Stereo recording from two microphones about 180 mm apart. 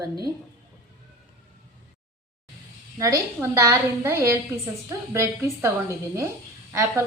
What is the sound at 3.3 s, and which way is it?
A woman's voice, 15° right (ahead or behind).